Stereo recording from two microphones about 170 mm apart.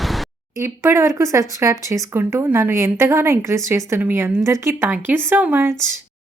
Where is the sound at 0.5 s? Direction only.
15° right (ahead or behind).